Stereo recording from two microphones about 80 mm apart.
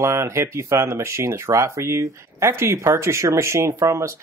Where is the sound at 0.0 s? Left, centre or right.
Right.